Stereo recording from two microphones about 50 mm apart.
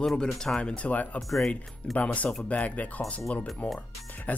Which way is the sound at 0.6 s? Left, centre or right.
Left.